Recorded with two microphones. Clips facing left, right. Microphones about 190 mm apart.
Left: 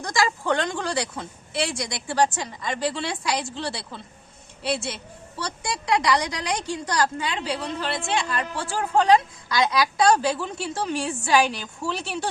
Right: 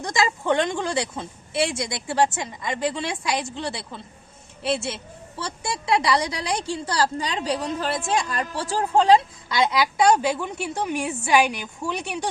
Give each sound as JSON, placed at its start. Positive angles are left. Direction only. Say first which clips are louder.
{"t": 0.0, "sound": "a woman's voice", "louder": "right 1 dB", "side_deg": -25}